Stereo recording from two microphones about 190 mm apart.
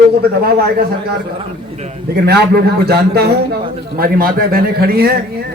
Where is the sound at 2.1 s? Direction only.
55° right (ahead or behind).